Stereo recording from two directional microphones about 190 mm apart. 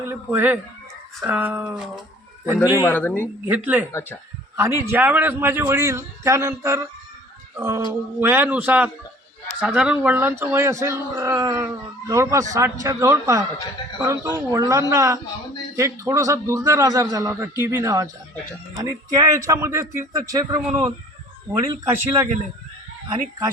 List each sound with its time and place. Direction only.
0.0 s speech: 10° right (ahead or behind)
2.8 s speech: 10° left (ahead or behind)
3.4 s speech: 10° right (ahead or behind)
7.5 s music: 15° right (ahead or behind)
8.2 s speech: 10° right (ahead or behind)